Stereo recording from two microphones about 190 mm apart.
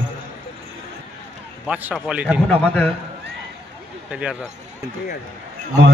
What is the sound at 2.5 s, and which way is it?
Speech, 5° left (ahead or behind).